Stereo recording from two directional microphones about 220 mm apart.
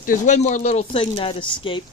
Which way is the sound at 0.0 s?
35° left (ahead or behind).